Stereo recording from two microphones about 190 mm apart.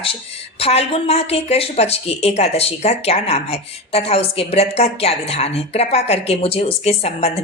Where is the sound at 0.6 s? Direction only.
30° left (ahead or behind).